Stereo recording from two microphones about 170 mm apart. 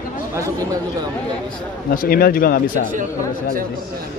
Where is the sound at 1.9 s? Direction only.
60° left (ahead or behind).